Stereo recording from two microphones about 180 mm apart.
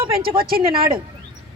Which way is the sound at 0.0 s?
55° right (ahead or behind).